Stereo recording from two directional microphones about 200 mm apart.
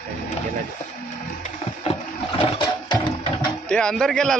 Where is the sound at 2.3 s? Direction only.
25° left (ahead or behind).